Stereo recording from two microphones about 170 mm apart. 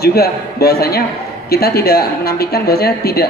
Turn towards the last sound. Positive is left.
turn(degrees=65)  # may be behind; listen again after turning